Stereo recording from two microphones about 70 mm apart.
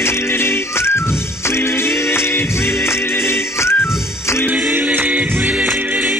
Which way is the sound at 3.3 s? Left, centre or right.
Left.